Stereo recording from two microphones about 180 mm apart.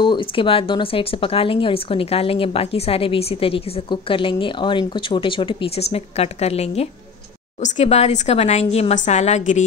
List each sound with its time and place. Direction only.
0.0 s speech: 25° left (ahead or behind)